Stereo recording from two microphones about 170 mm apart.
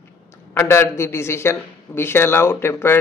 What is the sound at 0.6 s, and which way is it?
A man's voice, 15° left (ahead or behind).